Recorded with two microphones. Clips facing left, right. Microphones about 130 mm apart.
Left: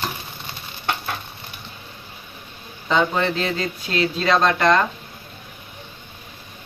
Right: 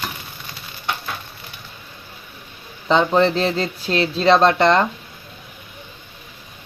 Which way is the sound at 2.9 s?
30° right (ahead or behind).